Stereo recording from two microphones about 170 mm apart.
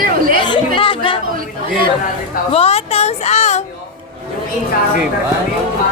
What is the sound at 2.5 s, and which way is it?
A woman's voice, 35° left (ahead or behind).